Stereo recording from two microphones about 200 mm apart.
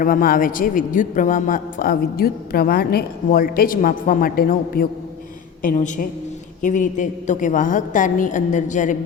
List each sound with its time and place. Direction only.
0.0 s a man's voice: 45° left (ahead or behind)